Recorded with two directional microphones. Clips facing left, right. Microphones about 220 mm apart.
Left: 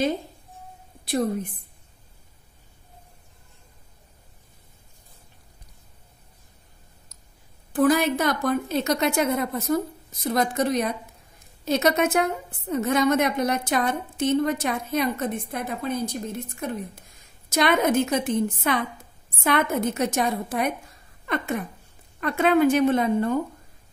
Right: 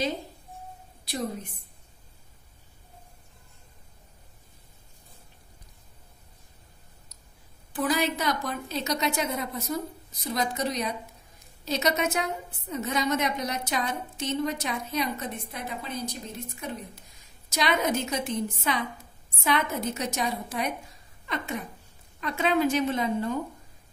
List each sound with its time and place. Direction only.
1.0 s a woman's voice: 55° left (ahead or behind)
7.7 s a woman's voice: 50° left (ahead or behind)